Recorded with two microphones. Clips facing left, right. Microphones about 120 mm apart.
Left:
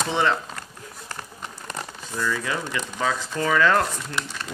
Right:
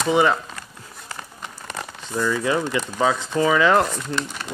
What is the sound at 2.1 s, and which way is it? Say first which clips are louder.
Speech: right 5 dB; 20° right (ahead or behind).